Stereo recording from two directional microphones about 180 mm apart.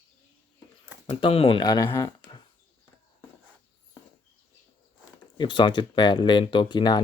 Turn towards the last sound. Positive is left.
turn(degrees=25)  # may be behind; listen again after turning